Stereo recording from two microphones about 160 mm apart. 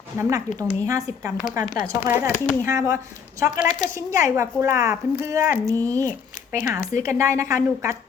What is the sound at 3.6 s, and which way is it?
Speech, 55° left (ahead or behind).